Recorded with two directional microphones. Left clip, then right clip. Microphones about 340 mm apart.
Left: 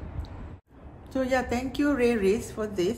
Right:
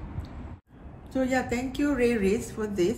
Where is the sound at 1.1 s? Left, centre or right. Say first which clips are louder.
Left 1 dB; centre.